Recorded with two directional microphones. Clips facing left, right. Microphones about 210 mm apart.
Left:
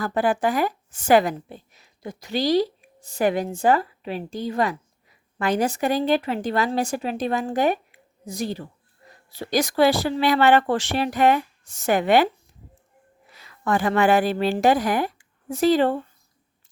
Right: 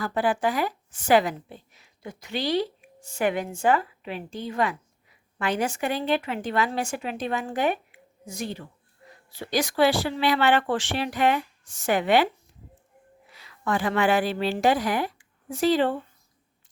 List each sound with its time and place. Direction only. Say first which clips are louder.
0.0 s a woman's voice: left 3 dB; 45° left (ahead or behind)
13.4 s a woman's voice: left 3 dB; 45° left (ahead or behind)